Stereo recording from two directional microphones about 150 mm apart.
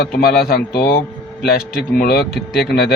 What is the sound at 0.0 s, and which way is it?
Speech, 85° left.